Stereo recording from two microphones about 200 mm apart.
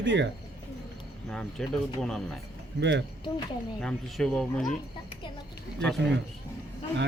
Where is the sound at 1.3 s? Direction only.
5° left (ahead or behind).